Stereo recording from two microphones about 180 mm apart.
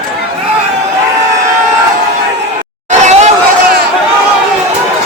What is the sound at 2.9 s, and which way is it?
Chatter, 40° right (ahead or behind).